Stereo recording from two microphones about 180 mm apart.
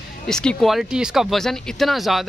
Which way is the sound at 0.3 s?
5° left (ahead or behind).